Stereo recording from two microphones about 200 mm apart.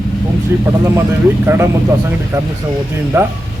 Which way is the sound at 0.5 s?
10° right (ahead or behind).